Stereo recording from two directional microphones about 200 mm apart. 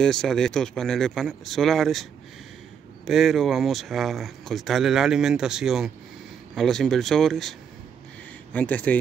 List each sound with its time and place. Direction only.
0.0 s speech: 5° left (ahead or behind)
3.1 s speech: centre (ahead or behind)
8.5 s speech: 10° left (ahead or behind)